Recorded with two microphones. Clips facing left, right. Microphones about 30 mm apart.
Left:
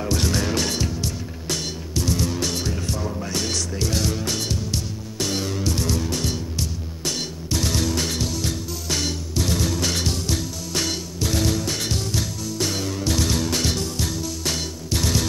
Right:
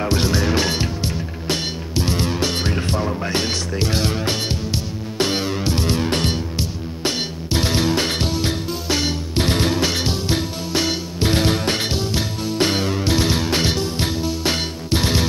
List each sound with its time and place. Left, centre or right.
0.0 s music: right
0.3 s music: centre
9.3 s music: right
9.8 s music: right
11.1 s music: right
11.9 s music: right